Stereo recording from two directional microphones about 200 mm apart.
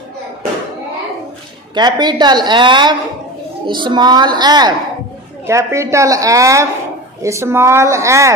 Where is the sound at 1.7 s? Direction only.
20° right (ahead or behind).